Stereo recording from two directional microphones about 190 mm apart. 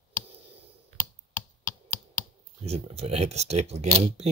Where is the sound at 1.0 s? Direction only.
45° left (ahead or behind).